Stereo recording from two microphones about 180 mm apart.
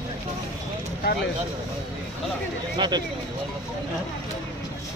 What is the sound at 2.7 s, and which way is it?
Speech, 25° right (ahead or behind).